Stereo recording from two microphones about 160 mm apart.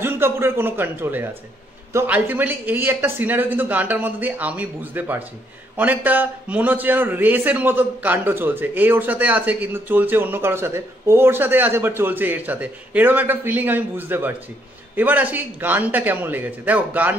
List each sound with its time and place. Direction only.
0.0 s a man's voice: 15° right (ahead or behind)